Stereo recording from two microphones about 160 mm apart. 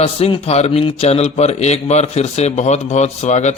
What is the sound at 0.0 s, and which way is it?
A man's voice, 40° left (ahead or behind).